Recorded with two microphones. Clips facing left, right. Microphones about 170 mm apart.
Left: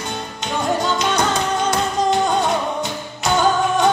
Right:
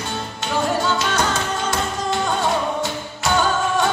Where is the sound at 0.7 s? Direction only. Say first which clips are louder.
Left 1 dB; 20° left (ahead or behind).